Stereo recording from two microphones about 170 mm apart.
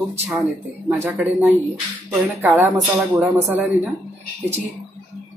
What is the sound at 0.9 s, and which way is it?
Speech, 10° right (ahead or behind).